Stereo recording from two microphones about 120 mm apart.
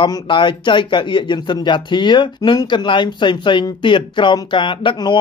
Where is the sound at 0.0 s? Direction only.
40° left (ahead or behind).